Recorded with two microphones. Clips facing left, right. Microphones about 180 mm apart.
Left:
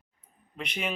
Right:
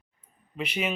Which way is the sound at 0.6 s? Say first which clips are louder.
Right 4 dB; 5° right (ahead or behind).